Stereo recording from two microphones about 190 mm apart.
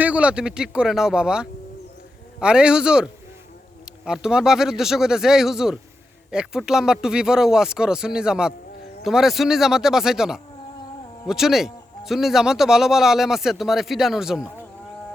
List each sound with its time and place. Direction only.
0.0 s speech: 5° right (ahead or behind)